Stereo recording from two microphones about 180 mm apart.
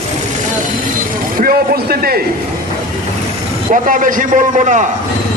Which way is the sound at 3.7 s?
45° right (ahead or behind).